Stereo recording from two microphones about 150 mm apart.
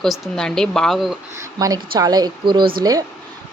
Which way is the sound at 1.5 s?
25° right (ahead or behind).